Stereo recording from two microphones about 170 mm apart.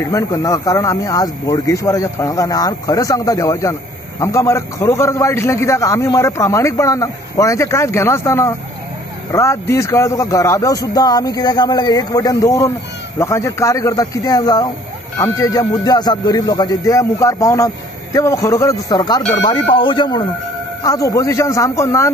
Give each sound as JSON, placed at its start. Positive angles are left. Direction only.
{"t": 0.0, "sound": "a man's voice", "side_deg": 20}